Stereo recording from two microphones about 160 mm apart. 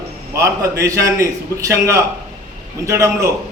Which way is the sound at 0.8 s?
20° right (ahead or behind).